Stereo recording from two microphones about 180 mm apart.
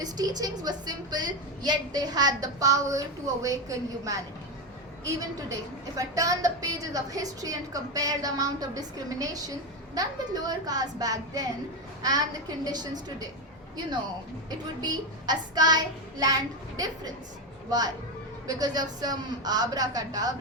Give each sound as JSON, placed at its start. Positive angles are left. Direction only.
{"t": 0.0, "sound": "a woman's voice", "side_deg": -20}
{"t": 6.0, "sound": "a woman's voice", "side_deg": -20}
{"t": 14.8, "sound": "a woman's voice", "side_deg": -20}